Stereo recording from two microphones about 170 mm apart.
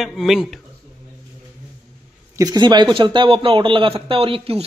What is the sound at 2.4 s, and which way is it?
A man's voice, 25° right (ahead or behind).